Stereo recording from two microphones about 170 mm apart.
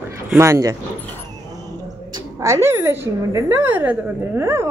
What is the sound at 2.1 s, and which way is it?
Speech, 15° right (ahead or behind).